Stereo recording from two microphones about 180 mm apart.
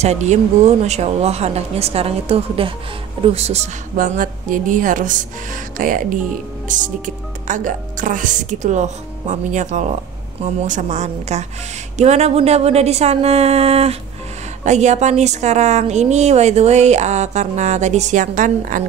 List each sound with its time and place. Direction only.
0.0 s a woman's voice: 40° right (ahead or behind)
3.9 s a woman's voice: 50° right (ahead or behind)